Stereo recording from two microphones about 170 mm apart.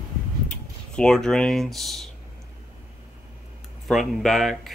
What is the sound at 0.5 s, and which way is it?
Speech, 5° left (ahead or behind).